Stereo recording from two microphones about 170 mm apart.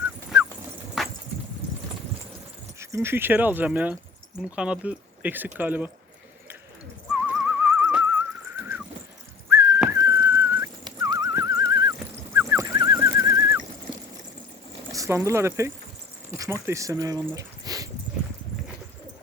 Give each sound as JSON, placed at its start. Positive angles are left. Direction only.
{"t": 1.0, "sound": "wood", "side_deg": 0}
{"t": 2.7, "sound": "speech", "side_deg": -15}
{"t": 7.1, "sound": "a sound", "side_deg": -5}
{"t": 9.5, "sound": "whistling", "side_deg": -20}
{"t": 14.9, "sound": "speech", "side_deg": -15}